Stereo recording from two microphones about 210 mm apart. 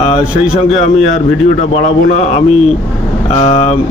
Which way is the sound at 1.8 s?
35° left (ahead or behind).